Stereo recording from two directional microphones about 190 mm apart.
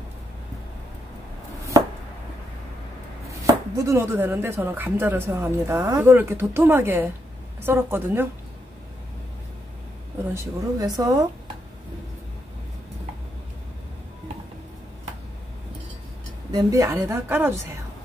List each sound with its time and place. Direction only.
3.4 s speech: 15° right (ahead or behind)
10.3 s speech: 15° right (ahead or behind)
16.5 s speech: 15° right (ahead or behind)